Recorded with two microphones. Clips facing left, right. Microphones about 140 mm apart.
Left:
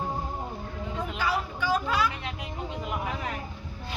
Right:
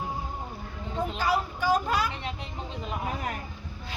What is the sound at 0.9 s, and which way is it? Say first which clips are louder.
Chatter: right 3 dB; 40° right (ahead or behind).